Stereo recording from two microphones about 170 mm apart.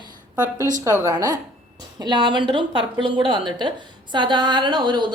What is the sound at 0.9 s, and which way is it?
A woman's voice, 15° right (ahead or behind).